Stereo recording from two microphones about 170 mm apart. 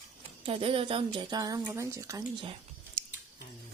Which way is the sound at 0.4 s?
35° right (ahead or behind).